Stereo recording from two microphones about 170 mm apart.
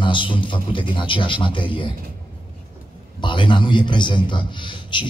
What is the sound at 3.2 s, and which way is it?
A man's voice, 30° left (ahead or behind).